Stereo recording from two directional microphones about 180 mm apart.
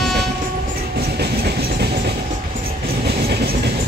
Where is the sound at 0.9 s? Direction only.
60° right (ahead or behind).